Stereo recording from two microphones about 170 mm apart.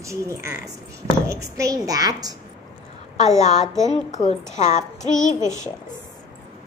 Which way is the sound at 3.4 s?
40° left (ahead or behind).